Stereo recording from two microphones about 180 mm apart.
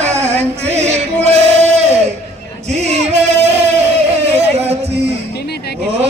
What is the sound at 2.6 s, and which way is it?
Music, 40° right (ahead or behind).